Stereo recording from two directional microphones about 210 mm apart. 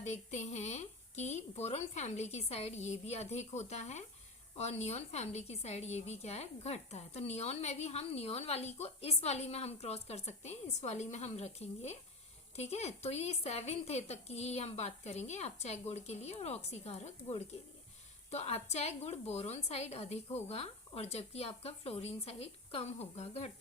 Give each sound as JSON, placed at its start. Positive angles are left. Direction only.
{"t": 0.0, "sound": "a woman's voice", "side_deg": 30}